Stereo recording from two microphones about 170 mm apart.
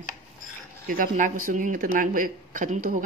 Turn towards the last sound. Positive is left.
turn(degrees=-50)  # may be behind; listen again after turning